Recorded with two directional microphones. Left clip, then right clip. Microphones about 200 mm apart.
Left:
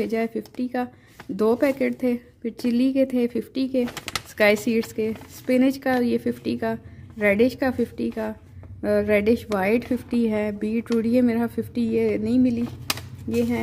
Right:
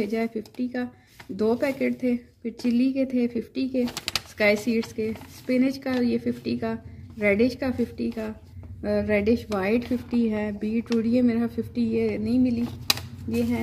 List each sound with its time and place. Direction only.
0.0 s a woman's voice: 50° left (ahead or behind)
3.8 s speech: centre (ahead or behind)
4.4 s a woman's voice: 50° left (ahead or behind)